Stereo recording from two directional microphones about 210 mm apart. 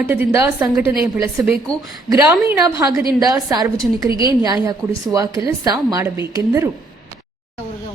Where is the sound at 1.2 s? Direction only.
5° right (ahead or behind).